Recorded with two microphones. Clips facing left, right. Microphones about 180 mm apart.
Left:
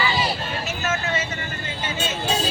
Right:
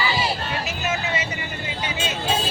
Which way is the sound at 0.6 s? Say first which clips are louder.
Left 3 dB; 15° right (ahead or behind).